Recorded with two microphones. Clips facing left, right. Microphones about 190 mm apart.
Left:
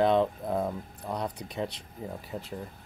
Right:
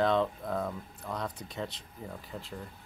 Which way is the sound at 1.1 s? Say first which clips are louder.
Left 3 dB; 10° left (ahead or behind).